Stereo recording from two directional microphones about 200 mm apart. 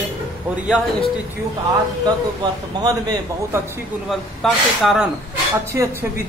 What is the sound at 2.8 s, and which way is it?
Speech, 20° right (ahead or behind).